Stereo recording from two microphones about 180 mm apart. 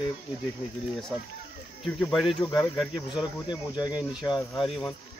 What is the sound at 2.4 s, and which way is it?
Speech, 20° left (ahead or behind).